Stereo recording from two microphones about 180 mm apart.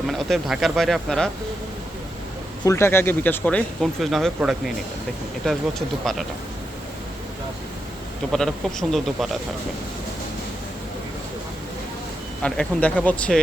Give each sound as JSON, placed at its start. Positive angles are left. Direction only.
{"t": 0.1, "sound": "speech", "side_deg": 0}
{"t": 2.6, "sound": "speech", "side_deg": 15}
{"t": 8.3, "sound": "speech", "side_deg": 0}
{"t": 12.4, "sound": "speech", "side_deg": 5}